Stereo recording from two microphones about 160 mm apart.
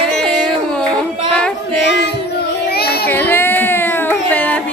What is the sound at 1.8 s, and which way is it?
Child singing, 90° left.